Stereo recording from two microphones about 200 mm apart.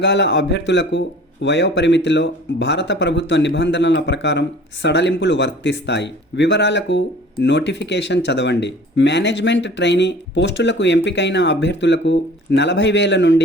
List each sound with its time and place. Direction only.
0.0 s speech: 60° left (ahead or behind)